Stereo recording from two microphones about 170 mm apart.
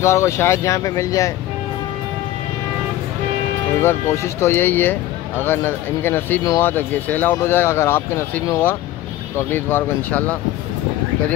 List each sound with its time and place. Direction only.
0.0 s speech: 15° left (ahead or behind)
3.8 s speech: 15° left (ahead or behind)